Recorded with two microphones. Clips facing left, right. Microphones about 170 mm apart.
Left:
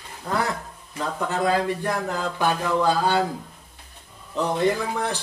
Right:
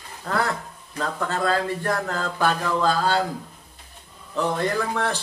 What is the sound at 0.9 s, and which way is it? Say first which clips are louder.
Speech: even; 15° left (ahead or behind).